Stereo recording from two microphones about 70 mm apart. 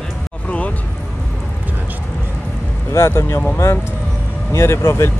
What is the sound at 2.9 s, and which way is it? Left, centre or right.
Speech, left.